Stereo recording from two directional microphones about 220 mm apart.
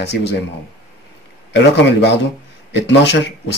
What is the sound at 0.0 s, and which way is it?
Speech, 50° left (ahead or behind).